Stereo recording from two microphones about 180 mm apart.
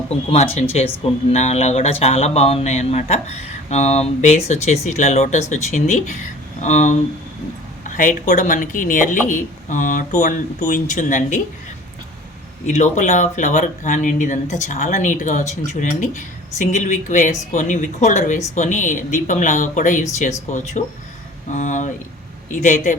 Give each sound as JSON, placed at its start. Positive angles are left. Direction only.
{"t": 0.5, "sound": "speech", "side_deg": 35}
{"t": 12.6, "sound": "speech", "side_deg": 40}